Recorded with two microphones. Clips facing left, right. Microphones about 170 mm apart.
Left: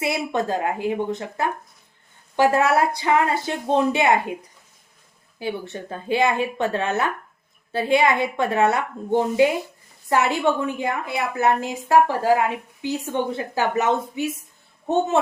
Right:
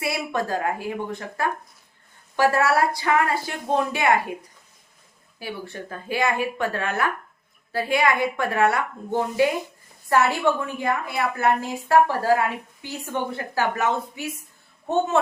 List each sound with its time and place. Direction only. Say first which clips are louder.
0.0 s a woman's voice: left 3 dB; 20° left (ahead or behind)
2.3 s a woman's voice: left 2 dB; 20° left (ahead or behind)
5.4 s a woman's voice: left 5 dB; 25° left (ahead or behind)